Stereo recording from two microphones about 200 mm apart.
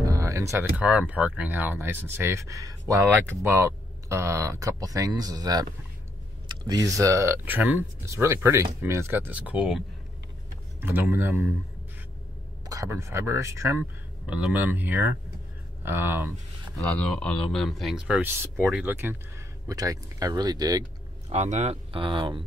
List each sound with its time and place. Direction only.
0.0 s speech: 15° right (ahead or behind)
12.6 s speech: 15° right (ahead or behind)
16.7 s speech: 5° left (ahead or behind)
18.9 s speech: 15° right (ahead or behind)
21.3 s speech: 35° right (ahead or behind)